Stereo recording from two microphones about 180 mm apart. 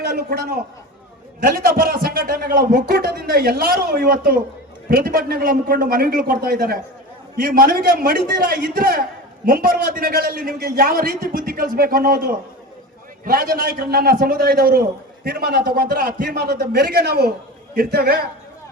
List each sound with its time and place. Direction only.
0.0 s a man's voice: 60° right (ahead or behind)